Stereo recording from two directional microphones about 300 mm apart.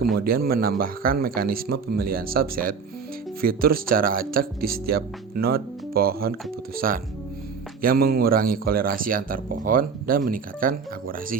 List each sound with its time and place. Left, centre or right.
0.3 s speech: right